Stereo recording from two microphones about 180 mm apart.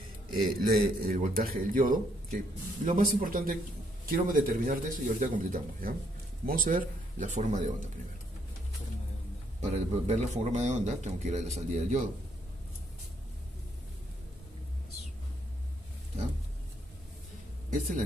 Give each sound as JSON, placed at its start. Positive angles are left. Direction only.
{"t": 0.6, "sound": "a man's voice", "side_deg": -55}
{"t": 9.6, "sound": "a man's voice", "side_deg": -40}
{"t": 17.7, "sound": "a man's voice", "side_deg": -45}